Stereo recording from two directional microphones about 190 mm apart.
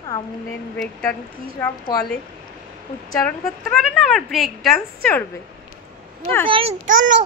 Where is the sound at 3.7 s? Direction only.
Centre (ahead or behind).